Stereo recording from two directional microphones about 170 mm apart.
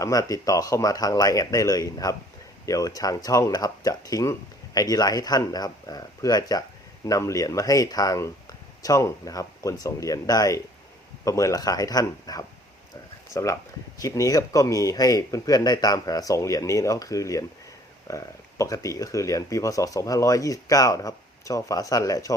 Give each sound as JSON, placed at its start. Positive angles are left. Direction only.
{"t": 0.0, "sound": "speech", "side_deg": 20}